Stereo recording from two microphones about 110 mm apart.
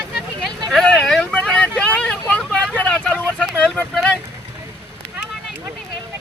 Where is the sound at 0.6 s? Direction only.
5° left (ahead or behind).